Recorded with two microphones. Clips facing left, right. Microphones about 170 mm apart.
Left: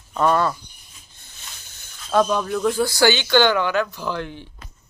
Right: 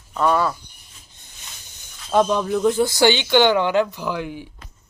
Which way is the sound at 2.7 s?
20° right (ahead or behind).